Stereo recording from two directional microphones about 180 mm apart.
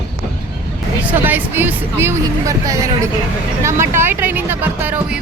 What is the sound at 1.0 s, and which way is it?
Speech, 10° right (ahead or behind).